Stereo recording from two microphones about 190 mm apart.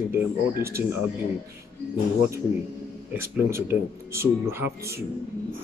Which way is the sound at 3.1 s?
10° right (ahead or behind).